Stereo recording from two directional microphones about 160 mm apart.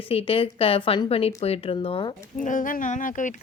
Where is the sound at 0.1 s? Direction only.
35° left (ahead or behind).